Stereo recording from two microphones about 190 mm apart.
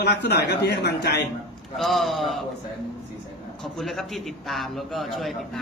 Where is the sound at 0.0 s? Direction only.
60° left (ahead or behind).